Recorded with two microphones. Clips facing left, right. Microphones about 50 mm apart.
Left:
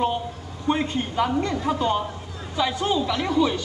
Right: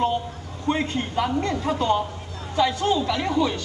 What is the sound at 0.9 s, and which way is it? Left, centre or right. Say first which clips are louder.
A woman's voice: left 1 dB; left.